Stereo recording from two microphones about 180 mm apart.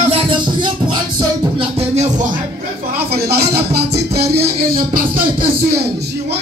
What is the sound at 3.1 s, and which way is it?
Music, 60° right (ahead or behind).